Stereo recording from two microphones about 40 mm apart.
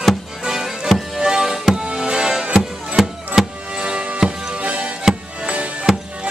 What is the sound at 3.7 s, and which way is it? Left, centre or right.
Music, right.